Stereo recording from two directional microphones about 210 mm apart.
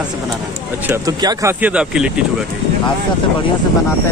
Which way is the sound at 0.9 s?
20° right (ahead or behind).